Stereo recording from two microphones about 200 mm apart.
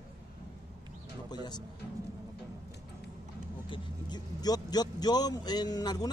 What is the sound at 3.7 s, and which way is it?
Speech, 20° left (ahead or behind).